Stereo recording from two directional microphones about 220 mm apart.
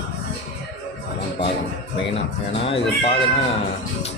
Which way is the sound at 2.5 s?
25° left (ahead or behind).